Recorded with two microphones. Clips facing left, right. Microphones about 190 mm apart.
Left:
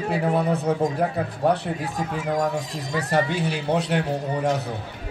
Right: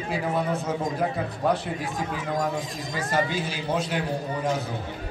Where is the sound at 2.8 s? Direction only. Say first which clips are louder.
Left 4 dB; 65° left (ahead or behind).